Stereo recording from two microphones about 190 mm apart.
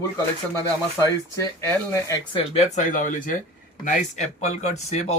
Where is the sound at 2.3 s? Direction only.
30° left (ahead or behind).